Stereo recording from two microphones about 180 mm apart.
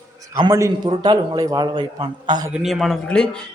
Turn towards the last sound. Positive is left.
turn(degrees=5)  # may be behind; listen again after turning